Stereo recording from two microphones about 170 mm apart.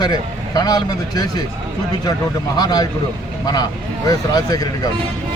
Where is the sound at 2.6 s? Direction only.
25° left (ahead or behind).